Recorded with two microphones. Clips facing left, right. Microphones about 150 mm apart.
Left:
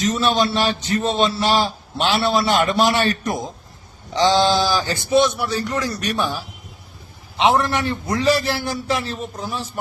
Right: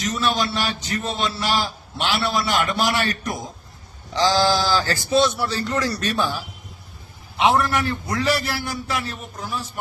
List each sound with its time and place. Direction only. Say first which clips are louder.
0.0 s a man's voice: left 4 dB; 25° left (ahead or behind)